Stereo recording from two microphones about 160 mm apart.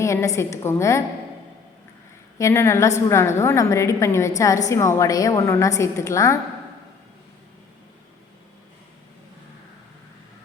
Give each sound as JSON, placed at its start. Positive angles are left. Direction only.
{"t": 0.0, "sound": "a woman's voice", "side_deg": 20}
{"t": 2.4, "sound": "a woman's voice", "side_deg": 15}